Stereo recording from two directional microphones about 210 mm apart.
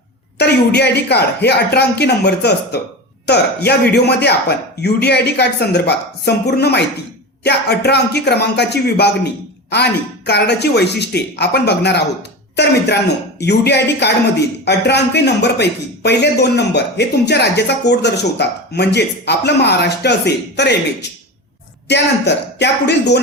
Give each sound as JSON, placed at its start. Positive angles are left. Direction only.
{"t": 0.3, "sound": "speech", "side_deg": 50}
{"t": 21.8, "sound": "speech", "side_deg": 55}